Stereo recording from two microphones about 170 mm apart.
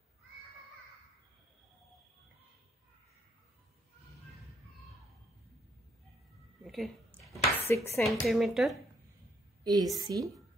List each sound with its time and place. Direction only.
6.6 s dishes: centre (ahead or behind)
7.6 s dishes: 15° left (ahead or behind)
8.0 s speech: centre (ahead or behind)
9.6 s a sound: 25° right (ahead or behind)
9.9 s a woman's voice: 20° right (ahead or behind)